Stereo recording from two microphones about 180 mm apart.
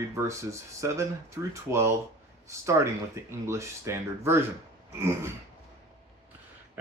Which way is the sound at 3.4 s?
15° right (ahead or behind).